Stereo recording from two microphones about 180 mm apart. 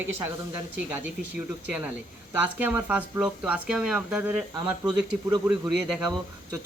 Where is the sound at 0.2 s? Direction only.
15° right (ahead or behind).